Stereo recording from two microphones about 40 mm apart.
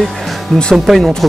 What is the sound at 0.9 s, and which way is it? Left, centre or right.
Speech, centre.